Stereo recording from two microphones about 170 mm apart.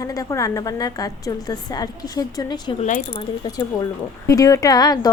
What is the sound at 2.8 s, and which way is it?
Speech, 50° left (ahead or behind).